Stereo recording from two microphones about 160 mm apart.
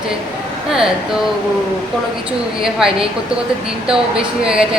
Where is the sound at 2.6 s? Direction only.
5° right (ahead or behind).